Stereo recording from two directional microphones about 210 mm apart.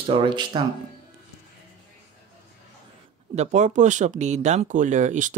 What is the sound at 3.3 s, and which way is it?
Speech, 35° right (ahead or behind).